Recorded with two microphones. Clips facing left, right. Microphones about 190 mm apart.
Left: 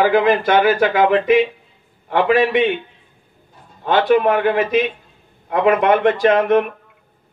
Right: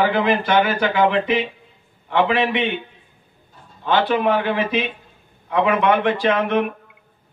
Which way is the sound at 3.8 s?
45° left (ahead or behind).